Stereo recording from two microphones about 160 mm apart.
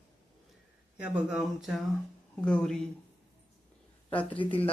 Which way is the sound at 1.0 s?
5° right (ahead or behind).